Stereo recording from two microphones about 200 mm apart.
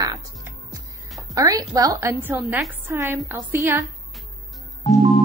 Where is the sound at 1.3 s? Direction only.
15° right (ahead or behind).